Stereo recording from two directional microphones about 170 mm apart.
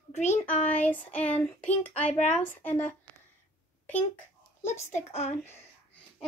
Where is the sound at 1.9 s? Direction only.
40° left (ahead or behind).